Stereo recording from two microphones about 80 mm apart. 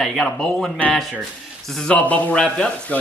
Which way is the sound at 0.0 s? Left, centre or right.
Centre.